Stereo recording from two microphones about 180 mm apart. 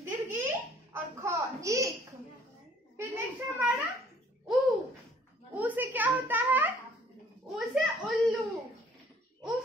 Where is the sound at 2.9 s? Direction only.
10° right (ahead or behind).